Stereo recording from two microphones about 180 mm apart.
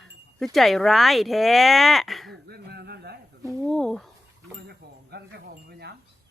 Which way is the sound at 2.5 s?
60° right (ahead or behind).